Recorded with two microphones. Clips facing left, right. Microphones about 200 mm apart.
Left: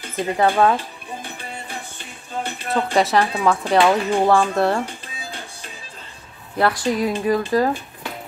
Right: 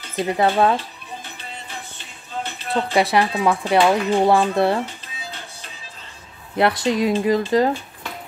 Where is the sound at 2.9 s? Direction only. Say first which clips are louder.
Even; 15° right (ahead or behind).